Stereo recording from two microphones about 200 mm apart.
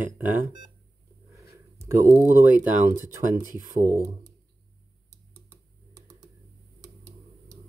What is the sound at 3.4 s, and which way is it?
Speech, 45° right (ahead or behind).